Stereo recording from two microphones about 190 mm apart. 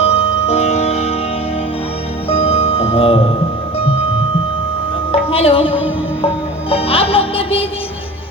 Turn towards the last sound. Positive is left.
turn(degrees=30)  # may be behind; listen again after turning